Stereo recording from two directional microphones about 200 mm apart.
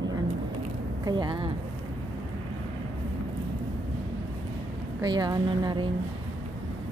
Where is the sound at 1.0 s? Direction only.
20° right (ahead or behind).